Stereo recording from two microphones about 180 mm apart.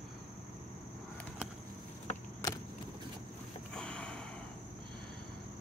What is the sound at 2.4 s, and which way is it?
Vehicle, 20° left (ahead or behind).